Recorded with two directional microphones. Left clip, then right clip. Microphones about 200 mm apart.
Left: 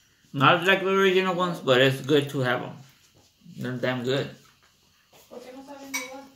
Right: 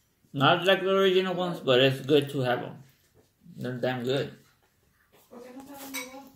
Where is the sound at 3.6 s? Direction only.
Centre (ahead or behind).